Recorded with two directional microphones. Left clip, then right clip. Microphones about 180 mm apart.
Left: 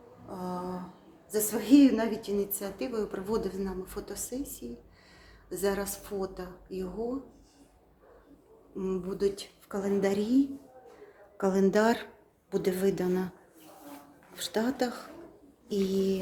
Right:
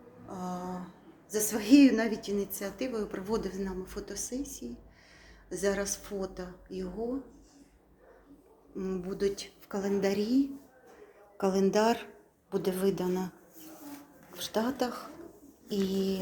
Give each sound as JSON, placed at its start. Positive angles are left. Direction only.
{"t": 0.3, "sound": "a sound", "side_deg": 0}
{"t": 1.3, "sound": "a woman's voice", "side_deg": -5}
{"t": 8.7, "sound": "a woman's voice", "side_deg": 5}
{"t": 14.3, "sound": "a woman's voice", "side_deg": 15}
{"t": 15.7, "sound": "a woman's voice", "side_deg": 10}